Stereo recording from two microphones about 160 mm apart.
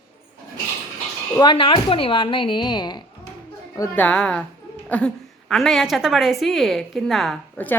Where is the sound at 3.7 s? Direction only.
15° left (ahead or behind).